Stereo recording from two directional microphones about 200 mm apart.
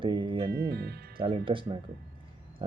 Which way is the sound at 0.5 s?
55° right (ahead or behind).